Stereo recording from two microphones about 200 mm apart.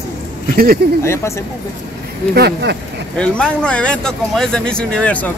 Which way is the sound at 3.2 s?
5° left (ahead or behind).